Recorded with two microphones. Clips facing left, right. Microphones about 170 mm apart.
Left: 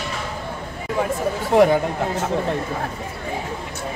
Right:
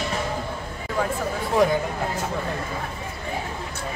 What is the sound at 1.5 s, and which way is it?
Speech, 65° left (ahead or behind).